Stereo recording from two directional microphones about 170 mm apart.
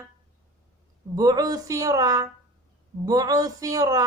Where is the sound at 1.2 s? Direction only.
20° right (ahead or behind).